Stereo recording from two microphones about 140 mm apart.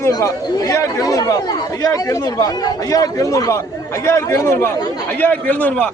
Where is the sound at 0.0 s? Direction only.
25° left (ahead or behind).